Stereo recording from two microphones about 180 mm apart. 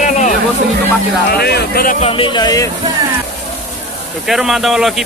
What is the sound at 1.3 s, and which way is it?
Speech, 60° left (ahead or behind).